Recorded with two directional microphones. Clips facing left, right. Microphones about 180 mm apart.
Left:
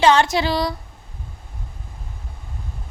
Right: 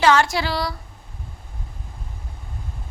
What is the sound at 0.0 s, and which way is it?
Speech, 20° left (ahead or behind).